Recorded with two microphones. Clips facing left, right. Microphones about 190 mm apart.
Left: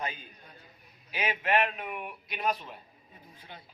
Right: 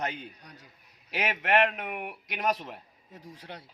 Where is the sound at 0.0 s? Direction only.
75° right (ahead or behind).